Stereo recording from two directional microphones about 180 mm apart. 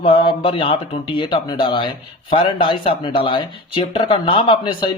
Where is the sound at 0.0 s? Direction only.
30° left (ahead or behind).